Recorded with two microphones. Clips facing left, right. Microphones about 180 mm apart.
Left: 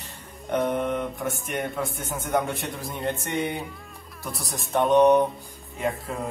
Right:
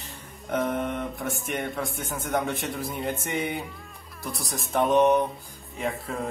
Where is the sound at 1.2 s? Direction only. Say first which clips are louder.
Left 1 dB; centre (ahead or behind).